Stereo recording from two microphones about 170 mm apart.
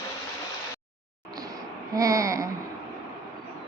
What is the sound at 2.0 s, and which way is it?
Babbling, 20° right (ahead or behind).